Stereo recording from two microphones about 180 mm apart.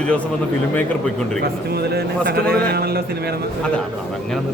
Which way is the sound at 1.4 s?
60° right (ahead or behind).